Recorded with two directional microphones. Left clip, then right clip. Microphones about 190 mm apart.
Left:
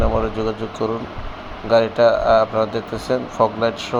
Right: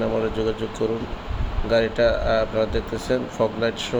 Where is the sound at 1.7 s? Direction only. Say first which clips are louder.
Left 5 dB; centre (ahead or behind).